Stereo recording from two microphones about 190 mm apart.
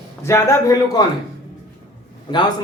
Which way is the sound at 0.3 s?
15° left (ahead or behind).